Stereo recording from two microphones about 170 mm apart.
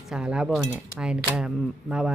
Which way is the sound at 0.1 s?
5° right (ahead or behind).